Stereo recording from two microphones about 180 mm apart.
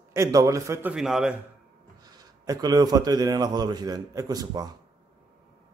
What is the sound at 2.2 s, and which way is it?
A man's voice, 20° right (ahead or behind).